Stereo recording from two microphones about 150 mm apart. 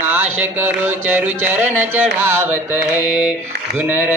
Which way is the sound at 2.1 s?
10° right (ahead or behind).